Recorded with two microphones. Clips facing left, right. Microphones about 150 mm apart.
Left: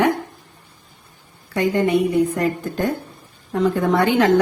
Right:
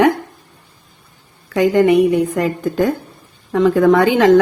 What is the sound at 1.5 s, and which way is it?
A woman's voice, 90° right.